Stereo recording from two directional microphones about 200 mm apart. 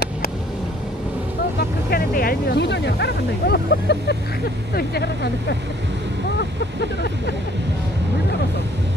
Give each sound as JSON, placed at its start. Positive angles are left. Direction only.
{"t": 1.6, "sound": "speech", "side_deg": 50}
{"t": 6.8, "sound": "speech", "side_deg": 55}